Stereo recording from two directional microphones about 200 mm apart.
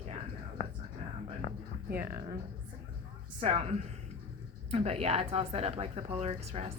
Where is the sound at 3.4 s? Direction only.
30° right (ahead or behind).